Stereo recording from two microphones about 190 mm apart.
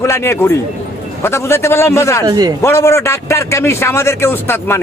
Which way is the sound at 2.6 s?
15° left (ahead or behind).